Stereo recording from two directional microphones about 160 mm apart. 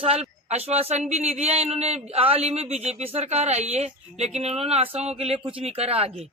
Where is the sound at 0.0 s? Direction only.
40° right (ahead or behind).